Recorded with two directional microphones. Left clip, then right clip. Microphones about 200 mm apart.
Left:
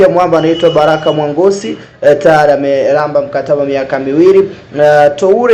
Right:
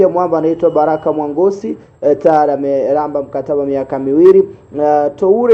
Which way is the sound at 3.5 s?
40° right (ahead or behind).